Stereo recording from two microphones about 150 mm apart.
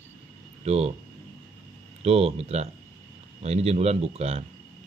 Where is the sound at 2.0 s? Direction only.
40° right (ahead or behind).